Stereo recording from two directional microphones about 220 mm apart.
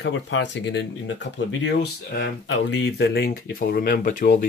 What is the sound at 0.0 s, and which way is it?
Speech, 55° left (ahead or behind).